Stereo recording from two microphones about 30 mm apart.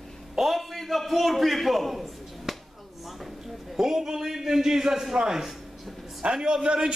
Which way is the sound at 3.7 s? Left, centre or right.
Centre.